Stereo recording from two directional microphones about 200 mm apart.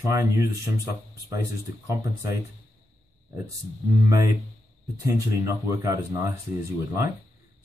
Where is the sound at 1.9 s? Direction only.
15° right (ahead or behind).